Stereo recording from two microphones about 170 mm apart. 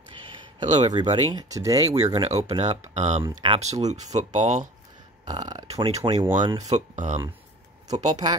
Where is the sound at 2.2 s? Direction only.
40° right (ahead or behind).